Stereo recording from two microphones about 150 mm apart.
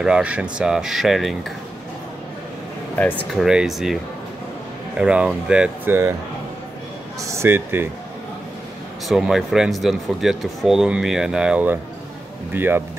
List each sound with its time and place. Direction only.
0.0 s speech: 5° right (ahead or behind)
3.0 s speech: 10° left (ahead or behind)
3.3 s speech: 5° right (ahead or behind)
7.2 s speech: 20° right (ahead or behind)
9.1 s speech: 5° right (ahead or behind)